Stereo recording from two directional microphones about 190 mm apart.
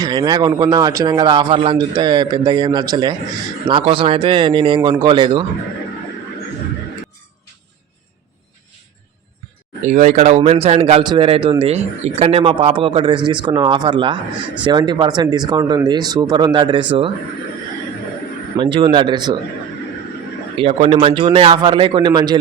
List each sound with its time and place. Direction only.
0.0 s speech: 20° right (ahead or behind)
9.8 s speech: 40° right (ahead or behind); by 16.8 s 25° right (ahead or behind)
18.5 s speech: 25° right (ahead or behind)
20.6 s speech: 35° right (ahead or behind)